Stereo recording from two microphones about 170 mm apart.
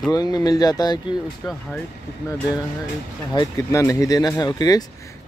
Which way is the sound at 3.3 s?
20° left (ahead or behind).